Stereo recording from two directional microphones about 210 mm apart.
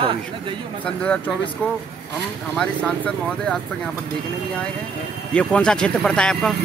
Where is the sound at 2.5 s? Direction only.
5° left (ahead or behind).